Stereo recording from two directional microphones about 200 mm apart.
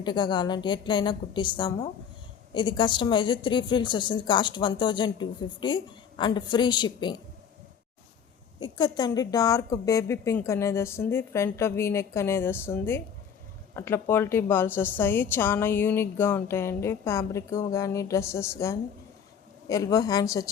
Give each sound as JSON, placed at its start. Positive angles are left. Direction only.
{"t": 0.0, "sound": "a woman's voice", "side_deg": 20}
{"t": 8.6, "sound": "a woman's voice", "side_deg": 20}